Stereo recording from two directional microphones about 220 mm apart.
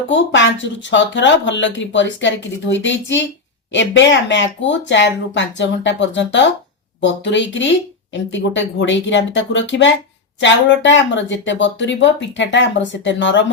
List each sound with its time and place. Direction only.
0.1 s speech: 55° left (ahead or behind)